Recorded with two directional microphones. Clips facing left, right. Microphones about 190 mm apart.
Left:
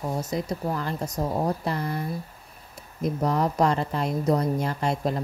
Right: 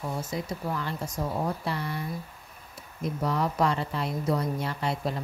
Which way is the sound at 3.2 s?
45° left (ahead or behind).